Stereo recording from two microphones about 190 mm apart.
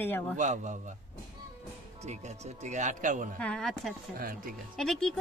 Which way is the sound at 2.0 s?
35° right (ahead or behind).